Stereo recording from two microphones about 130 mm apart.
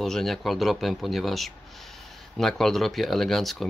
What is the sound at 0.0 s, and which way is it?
A man's voice, centre (ahead or behind).